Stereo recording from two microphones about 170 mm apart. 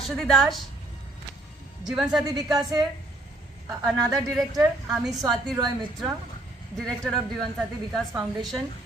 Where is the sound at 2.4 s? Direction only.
25° right (ahead or behind).